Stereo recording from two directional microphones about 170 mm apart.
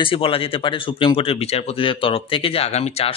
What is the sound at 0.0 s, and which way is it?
Speech, 30° left (ahead or behind).